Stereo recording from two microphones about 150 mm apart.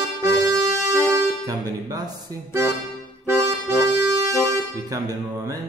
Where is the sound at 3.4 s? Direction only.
20° right (ahead or behind).